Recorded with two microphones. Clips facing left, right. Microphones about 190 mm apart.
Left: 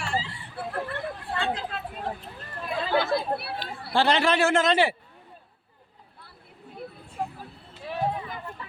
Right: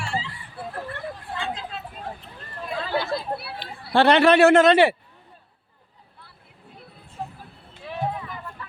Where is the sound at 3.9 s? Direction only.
65° right (ahead or behind).